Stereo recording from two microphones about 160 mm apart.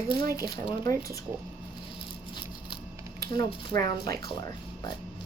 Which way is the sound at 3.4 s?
25° left (ahead or behind).